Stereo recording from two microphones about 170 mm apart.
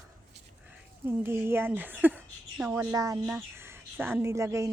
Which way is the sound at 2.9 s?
20° right (ahead or behind).